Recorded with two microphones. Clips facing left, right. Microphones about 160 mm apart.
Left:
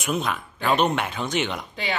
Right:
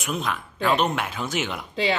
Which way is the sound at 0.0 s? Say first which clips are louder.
Left 2 dB; centre (ahead or behind).